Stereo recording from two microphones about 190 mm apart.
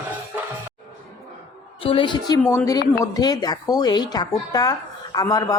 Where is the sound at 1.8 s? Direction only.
25° left (ahead or behind).